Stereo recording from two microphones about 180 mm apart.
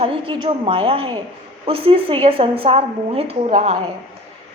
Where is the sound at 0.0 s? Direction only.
30° right (ahead or behind).